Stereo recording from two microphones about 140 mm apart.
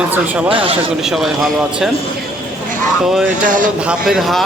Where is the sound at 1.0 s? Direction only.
Centre (ahead or behind).